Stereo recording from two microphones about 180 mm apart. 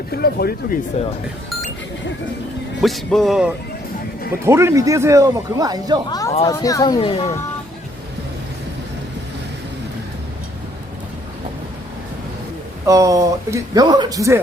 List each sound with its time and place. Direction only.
0.1 s speech: 60° left (ahead or behind)
2.8 s speech: centre (ahead or behind)
4.4 s speech: 15° right (ahead or behind)
6.1 s speech: 20° left (ahead or behind)
12.8 s a man's voice: 20° right (ahead or behind)